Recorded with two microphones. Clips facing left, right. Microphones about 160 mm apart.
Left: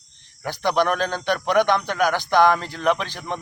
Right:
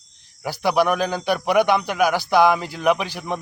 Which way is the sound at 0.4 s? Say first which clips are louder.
Right 2 dB; 5° right (ahead or behind).